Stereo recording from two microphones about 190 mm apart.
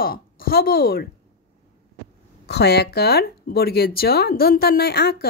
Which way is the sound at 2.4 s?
60° left (ahead or behind).